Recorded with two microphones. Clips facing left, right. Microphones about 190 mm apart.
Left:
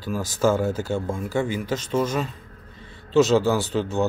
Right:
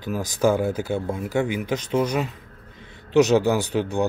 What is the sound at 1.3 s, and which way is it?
Speech, 20° right (ahead or behind).